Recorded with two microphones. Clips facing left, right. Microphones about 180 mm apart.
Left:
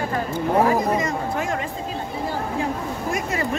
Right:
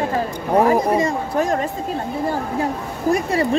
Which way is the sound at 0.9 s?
35° right (ahead or behind).